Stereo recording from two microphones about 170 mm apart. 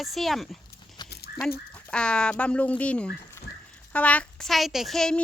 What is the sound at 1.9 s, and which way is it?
A woman's voice, 5° left (ahead or behind).